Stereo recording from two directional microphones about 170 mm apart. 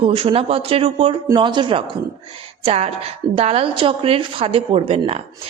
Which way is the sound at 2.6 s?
40° right (ahead or behind).